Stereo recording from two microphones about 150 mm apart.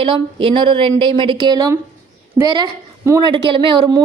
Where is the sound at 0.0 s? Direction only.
35° right (ahead or behind).